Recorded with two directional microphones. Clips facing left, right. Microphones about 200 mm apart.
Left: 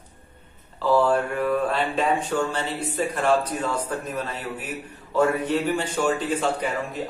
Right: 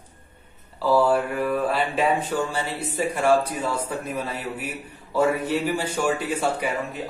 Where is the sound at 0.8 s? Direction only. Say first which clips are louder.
Even; 5° right (ahead or behind).